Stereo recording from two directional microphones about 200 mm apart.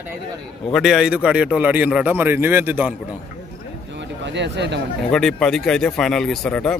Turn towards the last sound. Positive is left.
turn(degrees=5)  # may be behind; listen again after turning